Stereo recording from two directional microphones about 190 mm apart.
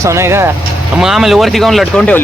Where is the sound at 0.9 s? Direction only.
Centre (ahead or behind).